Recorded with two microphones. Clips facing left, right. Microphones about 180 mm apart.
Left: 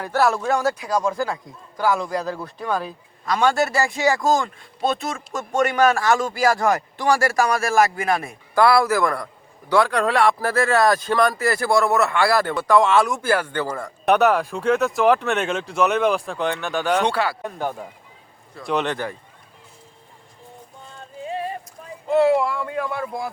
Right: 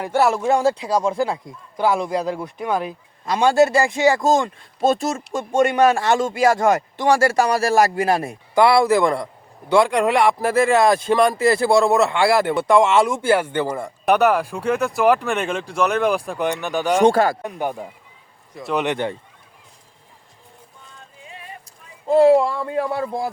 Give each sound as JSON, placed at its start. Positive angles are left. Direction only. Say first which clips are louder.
{"t": 0.0, "sound": "a man's voice", "louder": "right 2 dB", "side_deg": -20}
{"t": 0.5, "sound": "a man's voice", "louder": "right 3 dB", "side_deg": -25}
{"t": 4.8, "sound": "speech", "louder": "right 5 dB", "side_deg": -40}
{"t": 5.3, "sound": "a man's voice", "louder": "right 3 dB", "side_deg": -25}
{"t": 8.5, "sound": "a man's voice", "louder": "right 2 dB", "side_deg": -20}
{"t": 14.0, "sound": "speech", "louder": "even", "side_deg": 0}
{"t": 16.2, "sound": "speech", "louder": "right 2 dB", "side_deg": -15}
{"t": 17.0, "sound": "speech", "louder": "right 7 dB", "side_deg": -45}
{"t": 17.4, "sound": "speech", "louder": "right 2 dB", "side_deg": -15}
{"t": 18.9, "sound": "a man's voice", "louder": "right 4 dB", "side_deg": -20}
{"t": 21.2, "sound": "a sound", "louder": "left 14 dB", "side_deg": 35}
{"t": 22.1, "sound": "speech", "louder": "right 4 dB", "side_deg": -35}